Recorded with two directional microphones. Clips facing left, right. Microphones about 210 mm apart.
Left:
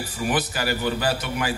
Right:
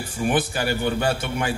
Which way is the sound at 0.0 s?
25° right (ahead or behind).